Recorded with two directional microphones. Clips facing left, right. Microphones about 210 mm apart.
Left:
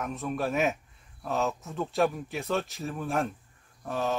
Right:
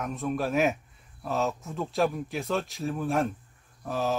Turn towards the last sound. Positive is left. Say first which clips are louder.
# right 1 dB
turn(degrees=0)  # may be behind; listen again after turning